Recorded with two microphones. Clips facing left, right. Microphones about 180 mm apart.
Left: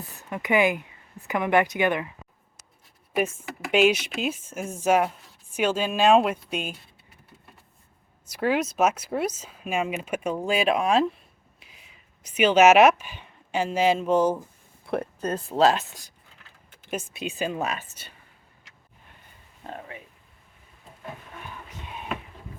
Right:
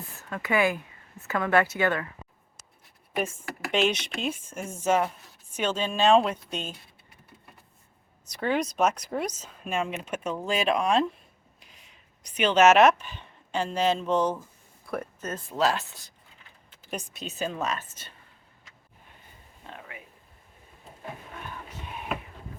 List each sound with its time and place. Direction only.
0.2 s speech: 15° left (ahead or behind)
3.2 s speech: 10° left (ahead or behind)
8.3 s speech: 5° left (ahead or behind)
14.8 s speech: 30° left (ahead or behind); by 18.1 s 10° left (ahead or behind)
19.6 s a sound: 40° left (ahead or behind)